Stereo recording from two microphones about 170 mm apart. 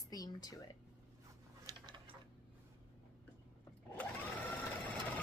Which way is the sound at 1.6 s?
25° right (ahead or behind).